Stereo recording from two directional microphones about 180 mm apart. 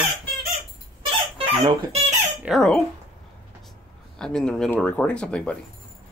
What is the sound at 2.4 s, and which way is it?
Speech, centre (ahead or behind).